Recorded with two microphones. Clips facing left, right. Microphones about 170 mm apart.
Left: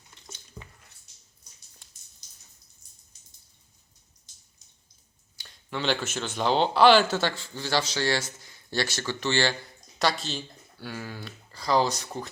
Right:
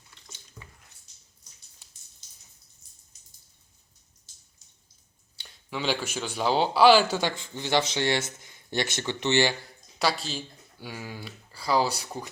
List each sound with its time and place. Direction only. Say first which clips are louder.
0.6 s squish: left 3 dB; 30° left (ahead or behind)
5.7 s speech: left 1 dB; 5° right (ahead or behind)
10.0 s speech: left 1 dB; 5° right (ahead or behind)